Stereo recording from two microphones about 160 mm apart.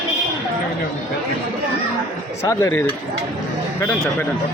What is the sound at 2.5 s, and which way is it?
Speech, 20° left (ahead or behind).